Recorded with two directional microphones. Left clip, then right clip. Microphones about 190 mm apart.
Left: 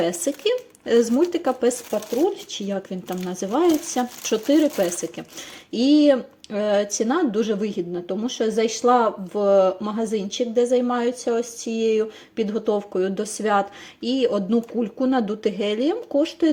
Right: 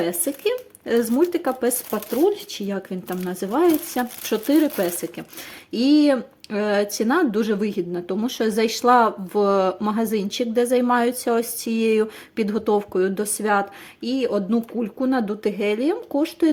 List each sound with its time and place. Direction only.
0.0 s speech: centre (ahead or behind)
1.9 s speech: 20° right (ahead or behind)
2.6 s speech: 5° right (ahead or behind)